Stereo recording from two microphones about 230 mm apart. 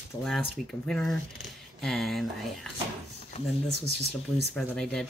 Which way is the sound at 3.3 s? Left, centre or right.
Left.